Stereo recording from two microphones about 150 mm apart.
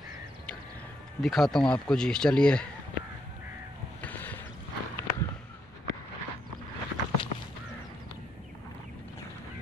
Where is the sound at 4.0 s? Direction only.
10° left (ahead or behind).